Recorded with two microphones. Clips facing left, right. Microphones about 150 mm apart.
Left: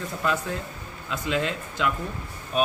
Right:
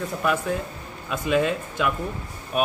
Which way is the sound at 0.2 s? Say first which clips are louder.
Right 3 dB; 15° right (ahead or behind).